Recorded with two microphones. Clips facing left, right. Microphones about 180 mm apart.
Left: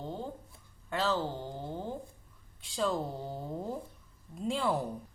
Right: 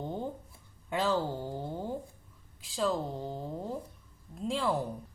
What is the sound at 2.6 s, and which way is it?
A woman's voice, centre (ahead or behind).